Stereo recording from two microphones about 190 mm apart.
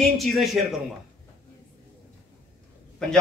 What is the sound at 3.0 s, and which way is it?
Speech, 5° left (ahead or behind).